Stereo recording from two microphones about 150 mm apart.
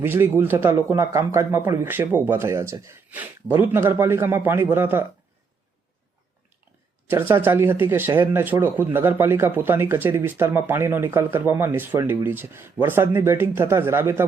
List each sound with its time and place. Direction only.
0.0 s speech: 15° right (ahead or behind)
7.1 s speech: 15° right (ahead or behind)